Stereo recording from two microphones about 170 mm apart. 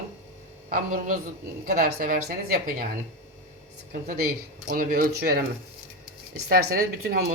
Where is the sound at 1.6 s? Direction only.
65° right (ahead or behind).